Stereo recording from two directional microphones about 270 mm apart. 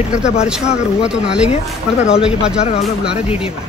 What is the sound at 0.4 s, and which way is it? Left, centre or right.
Speech, centre.